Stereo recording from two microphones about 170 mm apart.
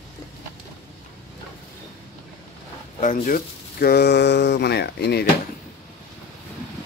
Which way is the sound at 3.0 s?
50° left (ahead or behind).